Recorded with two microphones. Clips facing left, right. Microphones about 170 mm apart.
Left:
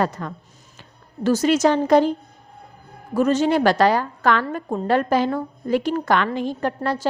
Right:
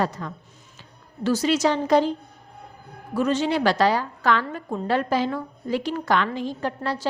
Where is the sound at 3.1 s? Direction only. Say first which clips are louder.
Left 4 dB; 45° left (ahead or behind).